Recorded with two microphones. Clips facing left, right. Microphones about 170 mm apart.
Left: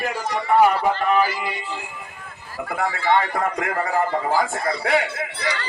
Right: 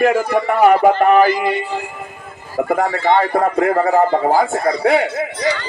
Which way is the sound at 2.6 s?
45° right (ahead or behind).